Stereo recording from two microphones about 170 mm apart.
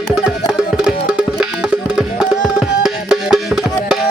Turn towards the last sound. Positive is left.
turn(degrees=-5)  # may be behind; listen again after turning